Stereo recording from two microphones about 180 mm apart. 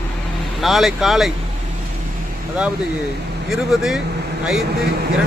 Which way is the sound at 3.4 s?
Centre (ahead or behind).